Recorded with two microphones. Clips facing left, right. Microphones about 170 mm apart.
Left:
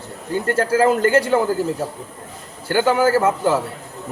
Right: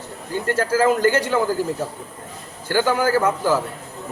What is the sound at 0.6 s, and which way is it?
Speech, 30° left (ahead or behind).